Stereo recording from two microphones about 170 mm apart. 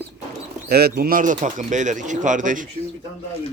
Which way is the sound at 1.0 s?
55° right (ahead or behind).